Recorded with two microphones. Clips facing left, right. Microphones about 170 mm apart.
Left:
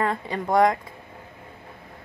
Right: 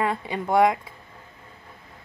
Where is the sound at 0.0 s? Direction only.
5° right (ahead or behind).